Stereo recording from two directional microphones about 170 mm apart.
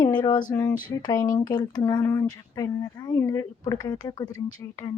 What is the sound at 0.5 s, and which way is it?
Speech, 20° left (ahead or behind).